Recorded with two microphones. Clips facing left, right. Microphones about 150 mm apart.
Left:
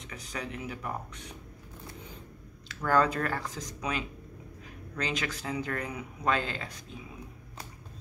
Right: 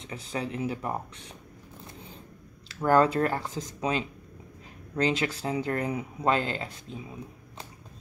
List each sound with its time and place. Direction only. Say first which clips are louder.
0.0 s speech: right 5 dB; 30° right (ahead or behind)
2.7 s speech: right 4 dB; 25° right (ahead or behind)